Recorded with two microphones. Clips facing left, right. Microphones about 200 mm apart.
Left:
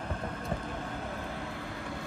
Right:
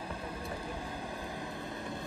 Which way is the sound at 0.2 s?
10° right (ahead or behind).